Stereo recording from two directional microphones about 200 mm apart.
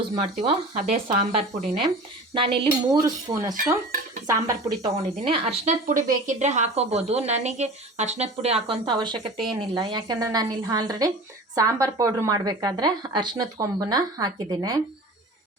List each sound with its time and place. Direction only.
0.2 s a woman's voice: 35° right (ahead or behind)